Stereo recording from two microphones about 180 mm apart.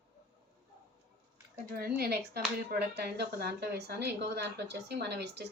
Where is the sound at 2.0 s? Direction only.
60° right (ahead or behind).